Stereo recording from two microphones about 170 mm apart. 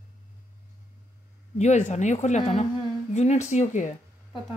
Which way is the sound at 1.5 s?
40° left (ahead or behind).